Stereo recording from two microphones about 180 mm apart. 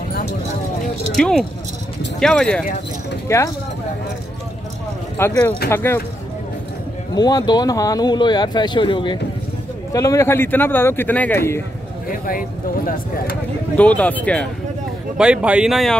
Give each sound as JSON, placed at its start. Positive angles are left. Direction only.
{"t": 1.1, "sound": "speech", "side_deg": 0}
{"t": 3.3, "sound": "speech", "side_deg": 15}
{"t": 5.1, "sound": "a man's voice", "side_deg": 10}
{"t": 7.2, "sound": "a man's voice", "side_deg": 20}
{"t": 12.1, "sound": "speech", "side_deg": 50}
{"t": 13.7, "sound": "a man's voice", "side_deg": 10}
{"t": 15.1, "sound": "speech", "side_deg": -5}